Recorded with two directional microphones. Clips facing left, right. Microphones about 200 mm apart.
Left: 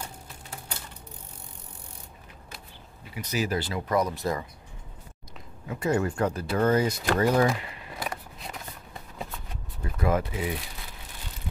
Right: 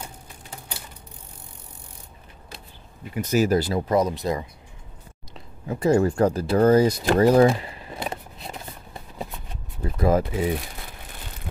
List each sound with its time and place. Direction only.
3.2 s speech: 45° right (ahead or behind)
3.9 s speech: 20° right (ahead or behind)
5.3 s speech: 35° right (ahead or behind)
9.8 s speech: 35° right (ahead or behind)